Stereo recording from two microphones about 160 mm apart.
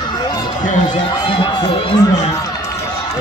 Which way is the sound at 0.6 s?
55° left (ahead or behind).